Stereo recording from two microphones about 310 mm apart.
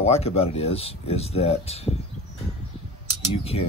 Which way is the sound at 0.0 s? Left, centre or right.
Centre.